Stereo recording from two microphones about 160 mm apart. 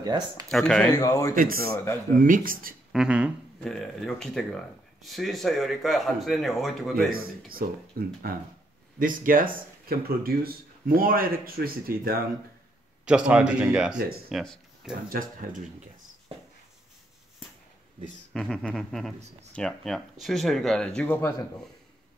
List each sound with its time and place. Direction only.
0.0 s speech: 25° right (ahead or behind)
0.5 s speech: 5° left (ahead or behind)
0.9 s speech: 20° left (ahead or behind)
1.3 s speech: 60° right (ahead or behind)
2.9 s speech: 5° right (ahead or behind)
7.1 s speech: 65° right (ahead or behind)
9.0 s speech: 60° right (ahead or behind)
13.0 s speech: 5° right (ahead or behind)
15.0 s speech: 60° right (ahead or behind)
18.3 s speech: 5° left (ahead or behind)